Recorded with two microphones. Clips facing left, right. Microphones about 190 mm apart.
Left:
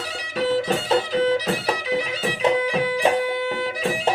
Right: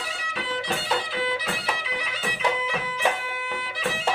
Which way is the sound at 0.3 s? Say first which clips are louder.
Left 9 dB; 40° left (ahead or behind).